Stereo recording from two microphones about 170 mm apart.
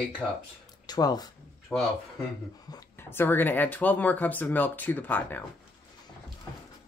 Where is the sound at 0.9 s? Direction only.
25° left (ahead or behind).